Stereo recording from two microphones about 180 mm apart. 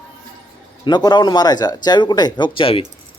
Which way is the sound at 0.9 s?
25° left (ahead or behind).